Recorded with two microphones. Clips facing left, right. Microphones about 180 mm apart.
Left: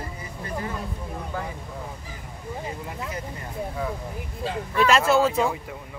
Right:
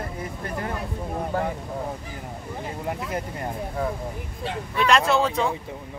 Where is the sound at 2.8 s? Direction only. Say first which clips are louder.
Right 4 dB; 55° right (ahead or behind).